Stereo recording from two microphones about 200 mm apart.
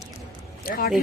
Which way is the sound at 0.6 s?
45° left (ahead or behind).